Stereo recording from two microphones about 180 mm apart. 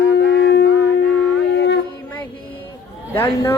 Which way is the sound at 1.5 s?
80° left.